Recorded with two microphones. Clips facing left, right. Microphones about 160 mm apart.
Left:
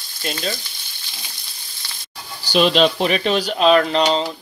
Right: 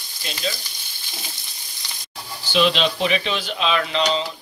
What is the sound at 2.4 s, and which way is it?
Speech, 40° left (ahead or behind).